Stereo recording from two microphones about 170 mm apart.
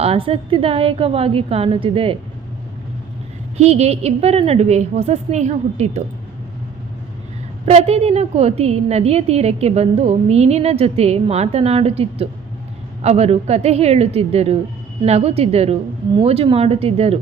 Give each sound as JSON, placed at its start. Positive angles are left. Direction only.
{"t": 0.0, "sound": "a woman's voice", "side_deg": -35}
{"t": 3.6, "sound": "a woman's voice", "side_deg": -40}
{"t": 7.6, "sound": "a woman's voice", "side_deg": -40}